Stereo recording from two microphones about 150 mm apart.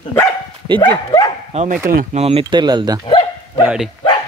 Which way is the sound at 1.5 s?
45° right (ahead or behind).